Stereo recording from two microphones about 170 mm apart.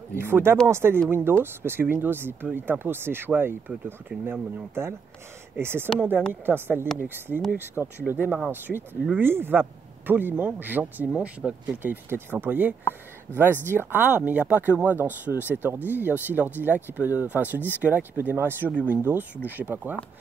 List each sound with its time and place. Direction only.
0.1 s speech: 15° right (ahead or behind)